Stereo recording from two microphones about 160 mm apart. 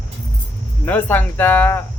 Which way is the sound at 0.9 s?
10° left (ahead or behind).